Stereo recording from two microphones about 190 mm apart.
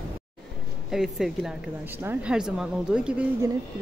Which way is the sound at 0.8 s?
Centre (ahead or behind).